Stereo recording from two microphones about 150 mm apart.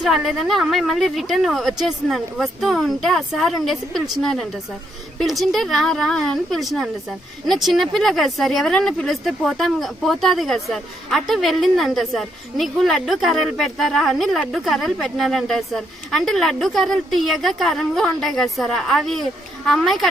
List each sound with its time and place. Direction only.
0.0 s speech: centre (ahead or behind)